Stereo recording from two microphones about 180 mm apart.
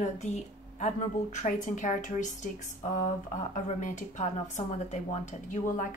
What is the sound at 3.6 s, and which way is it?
Speech, 40° left (ahead or behind).